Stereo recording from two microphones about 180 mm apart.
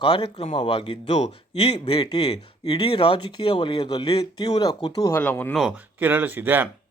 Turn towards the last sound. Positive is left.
turn(degrees=-10)  # may be behind; listen again after turning